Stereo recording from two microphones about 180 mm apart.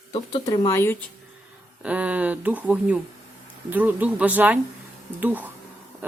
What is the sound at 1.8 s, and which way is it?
Speech, 5° right (ahead or behind).